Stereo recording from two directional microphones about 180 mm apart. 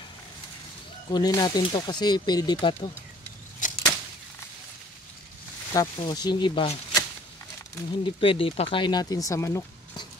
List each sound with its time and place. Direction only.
1.1 s speech: 20° left (ahead or behind)
3.6 s a sound: 45° left (ahead or behind)
5.7 s speech: 20° left (ahead or behind)
8.0 s speech: 30° left (ahead or behind)